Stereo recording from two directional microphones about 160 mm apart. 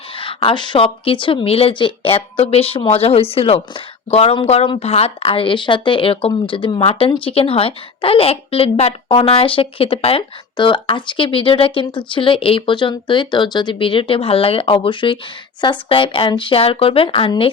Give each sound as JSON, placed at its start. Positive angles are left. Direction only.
{"t": 0.2, "sound": "a woman's voice", "side_deg": 35}